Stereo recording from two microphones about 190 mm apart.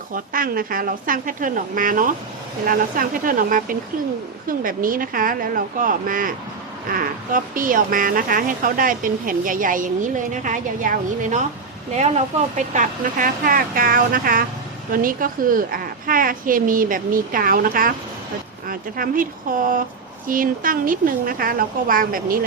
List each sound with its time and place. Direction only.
0.1 s speech: 50° right (ahead or behind)